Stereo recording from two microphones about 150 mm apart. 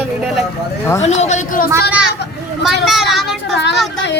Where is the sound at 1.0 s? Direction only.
45° left (ahead or behind).